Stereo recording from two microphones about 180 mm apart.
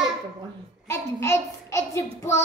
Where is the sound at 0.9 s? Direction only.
15° left (ahead or behind).